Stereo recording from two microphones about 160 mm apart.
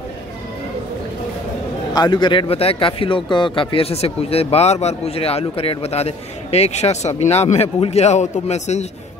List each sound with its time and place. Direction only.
2.0 s speech: 30° left (ahead or behind); by 8.8 s 45° left (ahead or behind)